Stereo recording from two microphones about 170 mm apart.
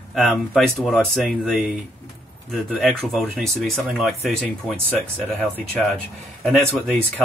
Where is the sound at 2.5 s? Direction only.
Centre (ahead or behind).